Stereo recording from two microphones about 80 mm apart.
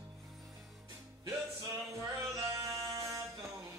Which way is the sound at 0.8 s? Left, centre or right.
Right.